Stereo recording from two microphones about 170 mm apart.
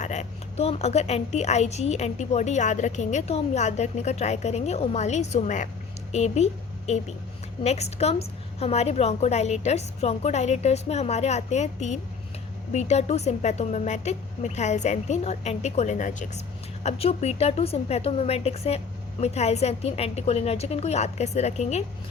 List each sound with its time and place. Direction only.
0.0 s a woman's voice: 45° left (ahead or behind)